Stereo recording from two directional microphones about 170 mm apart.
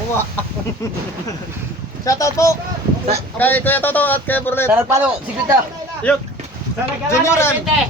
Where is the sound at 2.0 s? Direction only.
20° left (ahead or behind).